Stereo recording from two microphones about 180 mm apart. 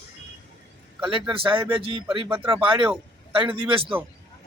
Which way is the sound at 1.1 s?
30° right (ahead or behind).